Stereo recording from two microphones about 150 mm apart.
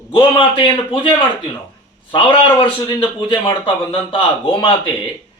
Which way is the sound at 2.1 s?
35° left (ahead or behind).